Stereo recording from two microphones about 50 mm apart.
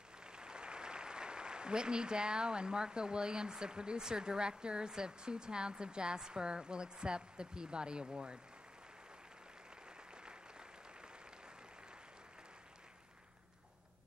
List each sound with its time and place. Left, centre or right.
0.3 s speech: centre